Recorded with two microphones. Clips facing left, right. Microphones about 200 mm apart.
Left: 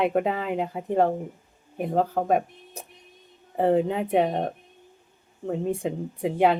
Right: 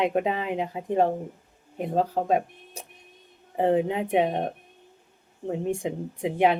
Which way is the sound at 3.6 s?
15° right (ahead or behind).